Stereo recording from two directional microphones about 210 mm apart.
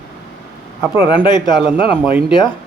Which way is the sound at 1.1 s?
20° left (ahead or behind).